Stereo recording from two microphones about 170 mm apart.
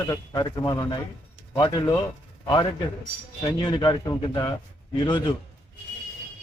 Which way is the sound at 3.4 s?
25° left (ahead or behind).